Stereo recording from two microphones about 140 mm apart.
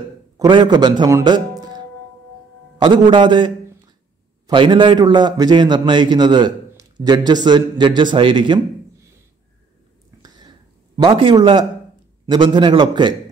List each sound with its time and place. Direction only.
0.4 s a man's voice: 30° right (ahead or behind)
10.1 s a sound: 20° right (ahead or behind)
11.0 s a man's voice: 40° right (ahead or behind)